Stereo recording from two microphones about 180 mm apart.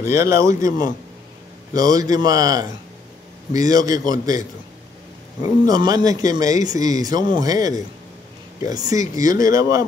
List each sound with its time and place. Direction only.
0.0 s speech: 15° right (ahead or behind)
5.7 s speech: 20° right (ahead or behind)